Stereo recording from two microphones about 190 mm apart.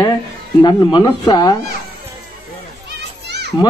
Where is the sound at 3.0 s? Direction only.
65° right (ahead or behind).